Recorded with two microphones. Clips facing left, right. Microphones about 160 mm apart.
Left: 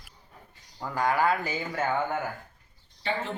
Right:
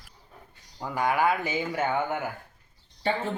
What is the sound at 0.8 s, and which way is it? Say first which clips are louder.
Speech: right 1 dB; 15° right (ahead or behind).